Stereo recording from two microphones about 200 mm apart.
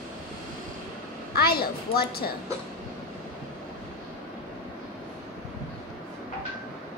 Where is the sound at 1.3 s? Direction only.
50° left (ahead or behind).